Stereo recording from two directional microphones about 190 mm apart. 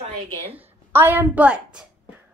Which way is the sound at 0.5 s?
10° right (ahead or behind).